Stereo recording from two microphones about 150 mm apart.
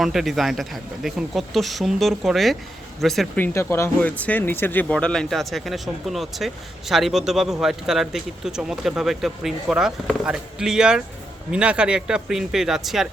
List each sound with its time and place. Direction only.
0.0 s speech: centre (ahead or behind)
3.3 s speech: 15° left (ahead or behind); by 13.1 s centre (ahead or behind)